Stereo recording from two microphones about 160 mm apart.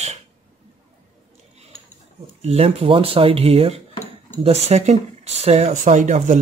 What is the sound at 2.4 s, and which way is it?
Speech, 40° right (ahead or behind).